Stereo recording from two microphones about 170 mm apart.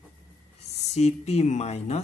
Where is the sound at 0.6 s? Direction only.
40° left (ahead or behind).